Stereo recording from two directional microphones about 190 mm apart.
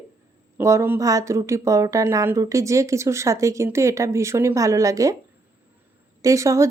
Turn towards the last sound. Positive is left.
turn(degrees=-15)  # may be behind; listen again after turning